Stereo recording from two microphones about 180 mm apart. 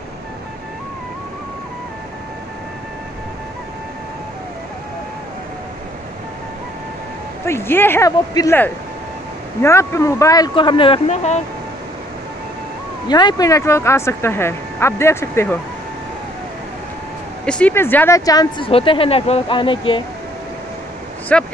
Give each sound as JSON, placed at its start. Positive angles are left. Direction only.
{"t": 7.4, "sound": "speech", "side_deg": 15}
{"t": 13.1, "sound": "speech", "side_deg": 25}
{"t": 17.5, "sound": "speech", "side_deg": 5}
{"t": 18.7, "sound": "speech", "side_deg": 30}
{"t": 21.3, "sound": "speech", "side_deg": 5}